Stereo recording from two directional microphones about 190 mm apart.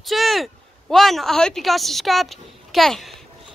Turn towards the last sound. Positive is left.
turn(degrees=0)  # may be behind; listen again after turning